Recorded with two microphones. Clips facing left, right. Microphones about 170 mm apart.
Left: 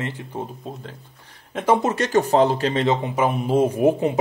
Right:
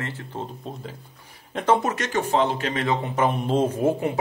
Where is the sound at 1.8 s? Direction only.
30° left (ahead or behind).